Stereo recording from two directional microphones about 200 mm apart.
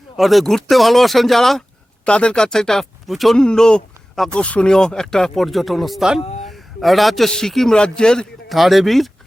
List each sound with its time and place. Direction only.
0.2 s a man's voice: centre (ahead or behind)